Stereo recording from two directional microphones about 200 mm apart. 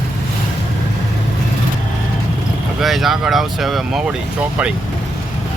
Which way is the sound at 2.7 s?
Centre (ahead or behind).